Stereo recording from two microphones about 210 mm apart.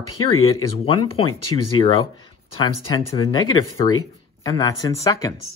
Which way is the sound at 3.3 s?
20° left (ahead or behind).